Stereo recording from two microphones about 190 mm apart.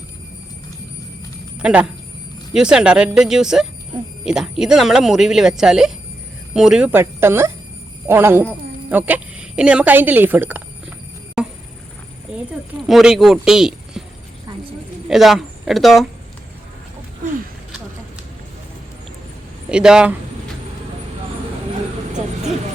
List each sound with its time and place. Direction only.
1.5 s a woman's voice: 5° right (ahead or behind)
11.4 s a sound: 5° right (ahead or behind)
12.9 s speech: centre (ahead or behind)
15.1 s speech: centre (ahead or behind)
19.7 s speech: 5° right (ahead or behind)
22.1 s vehicle: 35° right (ahead or behind)